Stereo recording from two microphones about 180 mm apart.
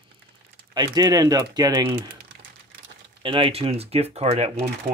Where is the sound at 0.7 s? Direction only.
20° right (ahead or behind).